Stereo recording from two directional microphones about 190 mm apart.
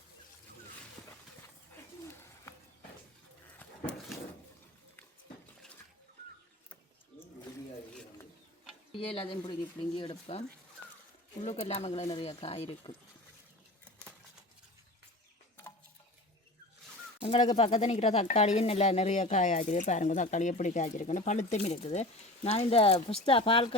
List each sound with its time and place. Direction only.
1.7 s bird: 15° left (ahead or behind)
8.9 s speech: 30° left (ahead or behind)
11.4 s speech: 35° left (ahead or behind)
17.2 s speech: 30° left (ahead or behind)